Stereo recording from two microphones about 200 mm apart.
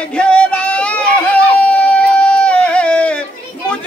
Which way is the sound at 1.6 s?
5° left (ahead or behind).